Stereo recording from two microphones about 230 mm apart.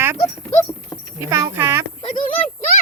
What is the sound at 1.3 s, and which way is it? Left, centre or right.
Speech, centre.